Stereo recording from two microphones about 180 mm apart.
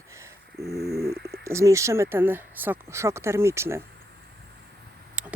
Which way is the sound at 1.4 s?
15° right (ahead or behind).